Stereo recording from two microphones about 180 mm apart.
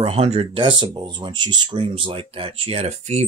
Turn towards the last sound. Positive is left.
turn(degrees=-35)  # may be behind; listen again after turning